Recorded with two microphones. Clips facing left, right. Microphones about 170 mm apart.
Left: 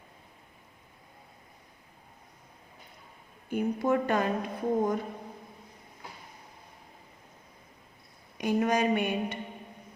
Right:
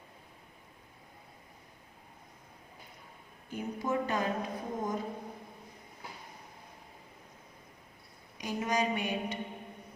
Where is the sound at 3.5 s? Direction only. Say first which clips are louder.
Left 6 dB; 60° left (ahead or behind).